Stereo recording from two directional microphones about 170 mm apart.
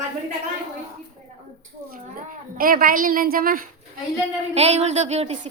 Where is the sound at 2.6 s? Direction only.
55° right (ahead or behind).